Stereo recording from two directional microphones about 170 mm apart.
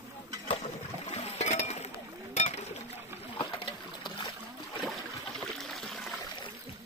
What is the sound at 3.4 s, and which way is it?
Boat, 30° left (ahead or behind).